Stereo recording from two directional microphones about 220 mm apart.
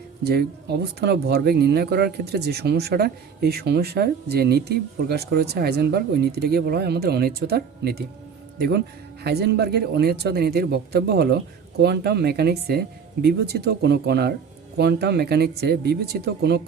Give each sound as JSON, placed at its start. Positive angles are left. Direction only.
{"t": 0.3, "sound": "speech", "side_deg": -45}